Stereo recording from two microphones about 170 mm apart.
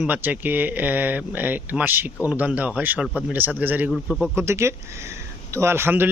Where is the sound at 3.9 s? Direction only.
Centre (ahead or behind).